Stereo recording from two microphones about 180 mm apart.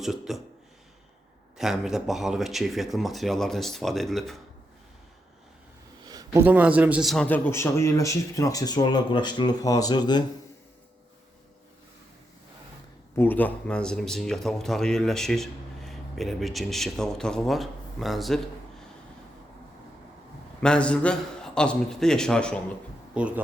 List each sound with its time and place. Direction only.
0.0 s speech: centre (ahead or behind)
1.5 s speech: centre (ahead or behind)
6.1 s a sound: 20° right (ahead or behind)
6.4 s a man's voice: 10° right (ahead or behind); by 10.2 s 25° left (ahead or behind)
13.1 s speech: 10° left (ahead or behind)
20.6 s speech: 5° left (ahead or behind)
23.1 s speech: 5° right (ahead or behind)